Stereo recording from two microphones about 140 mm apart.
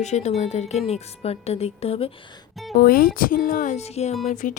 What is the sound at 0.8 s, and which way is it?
Speech, 45° left (ahead or behind).